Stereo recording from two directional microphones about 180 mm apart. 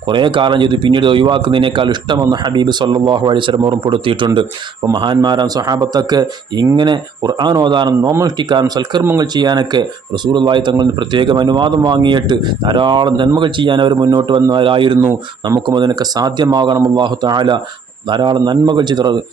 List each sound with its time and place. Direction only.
0.1 s speech: 25° right (ahead or behind)